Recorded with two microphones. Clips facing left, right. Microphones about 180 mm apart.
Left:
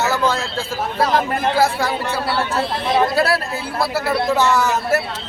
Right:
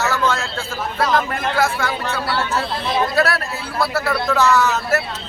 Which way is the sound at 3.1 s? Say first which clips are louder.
Left 1 dB; 30° left (ahead or behind).